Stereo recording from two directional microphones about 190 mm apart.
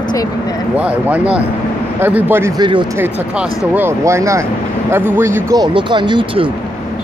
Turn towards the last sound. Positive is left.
turn(degrees=-25)  # may be behind; listen again after turning